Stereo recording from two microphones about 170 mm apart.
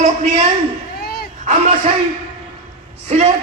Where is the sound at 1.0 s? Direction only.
70° left (ahead or behind).